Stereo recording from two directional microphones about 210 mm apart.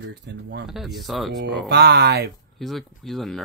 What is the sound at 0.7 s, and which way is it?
Speech, centre (ahead or behind).